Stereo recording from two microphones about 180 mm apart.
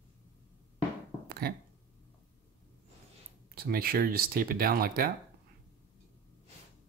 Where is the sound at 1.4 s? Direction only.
55° right (ahead or behind).